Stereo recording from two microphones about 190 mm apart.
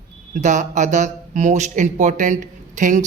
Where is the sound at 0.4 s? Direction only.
40° right (ahead or behind).